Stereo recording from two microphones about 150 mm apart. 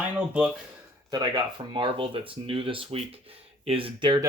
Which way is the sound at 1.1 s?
30° right (ahead or behind).